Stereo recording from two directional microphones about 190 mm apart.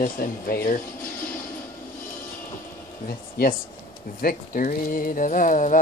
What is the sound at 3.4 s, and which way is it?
Speech, 55° left (ahead or behind).